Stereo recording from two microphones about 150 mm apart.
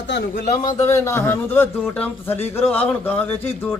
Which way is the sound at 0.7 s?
20° left (ahead or behind).